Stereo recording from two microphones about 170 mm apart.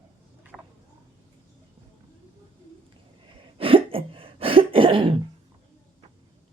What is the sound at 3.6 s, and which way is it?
Throat clearing, 35° right (ahead or behind).